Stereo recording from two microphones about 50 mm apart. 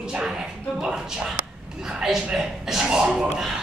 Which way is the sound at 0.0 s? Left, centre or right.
Centre.